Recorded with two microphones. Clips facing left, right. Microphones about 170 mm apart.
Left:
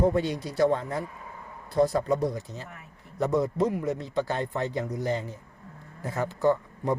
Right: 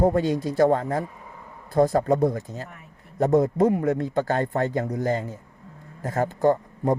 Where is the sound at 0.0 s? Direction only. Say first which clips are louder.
Right 4 dB; 45° right (ahead or behind).